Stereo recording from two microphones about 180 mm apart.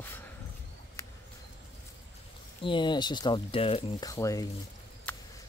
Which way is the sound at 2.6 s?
25° left (ahead or behind).